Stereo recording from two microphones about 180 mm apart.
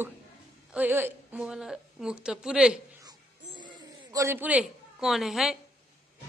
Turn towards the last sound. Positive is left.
turn(degrees=0)  # may be behind; listen again after turning